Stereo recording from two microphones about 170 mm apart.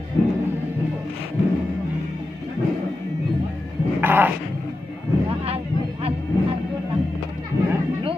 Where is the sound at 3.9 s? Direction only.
10° right (ahead or behind).